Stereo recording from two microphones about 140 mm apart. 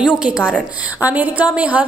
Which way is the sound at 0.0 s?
5° right (ahead or behind).